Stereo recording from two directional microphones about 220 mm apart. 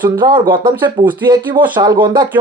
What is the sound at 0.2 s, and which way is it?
Speech, 20° right (ahead or behind).